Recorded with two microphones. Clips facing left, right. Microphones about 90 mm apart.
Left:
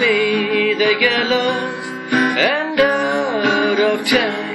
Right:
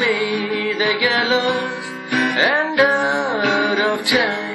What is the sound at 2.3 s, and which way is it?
Music, 20° right (ahead or behind).